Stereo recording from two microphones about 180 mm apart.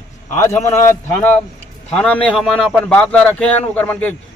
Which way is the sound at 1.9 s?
5° left (ahead or behind).